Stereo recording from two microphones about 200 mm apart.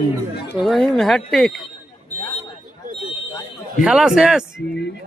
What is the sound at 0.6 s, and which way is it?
Speech, centre (ahead or behind).